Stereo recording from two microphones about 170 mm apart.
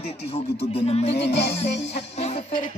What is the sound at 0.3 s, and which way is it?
Music, 35° left (ahead or behind).